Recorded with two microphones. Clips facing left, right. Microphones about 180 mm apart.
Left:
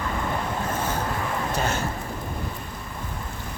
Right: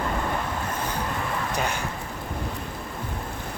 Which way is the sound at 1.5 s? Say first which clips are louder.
Left 2 dB; 15° right (ahead or behind).